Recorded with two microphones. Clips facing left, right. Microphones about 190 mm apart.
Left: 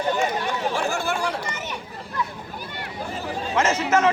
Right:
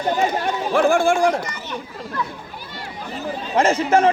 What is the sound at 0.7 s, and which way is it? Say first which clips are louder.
Speech: right 14 dB; 55° right (ahead or behind).